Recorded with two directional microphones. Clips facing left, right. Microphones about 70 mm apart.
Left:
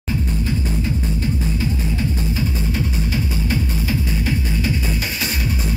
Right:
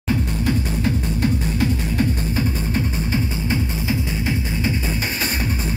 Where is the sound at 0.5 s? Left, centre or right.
Right.